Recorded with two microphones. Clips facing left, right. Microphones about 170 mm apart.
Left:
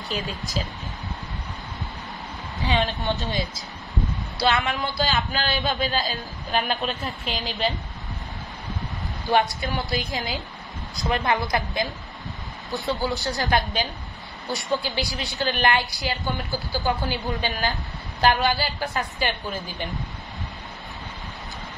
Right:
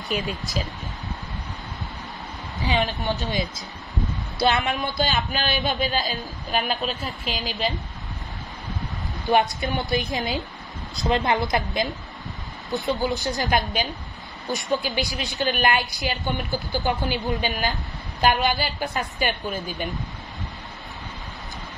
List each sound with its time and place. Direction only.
2.6 s a man's voice: 15° right (ahead or behind)
6.6 s a woman's voice: centre (ahead or behind)
9.2 s a woman's voice: 20° right (ahead or behind)